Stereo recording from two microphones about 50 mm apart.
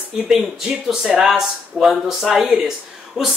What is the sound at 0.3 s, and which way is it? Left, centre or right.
Speech, centre.